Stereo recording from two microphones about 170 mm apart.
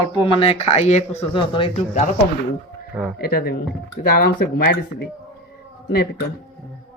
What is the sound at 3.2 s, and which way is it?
Speech, 65° left (ahead or behind).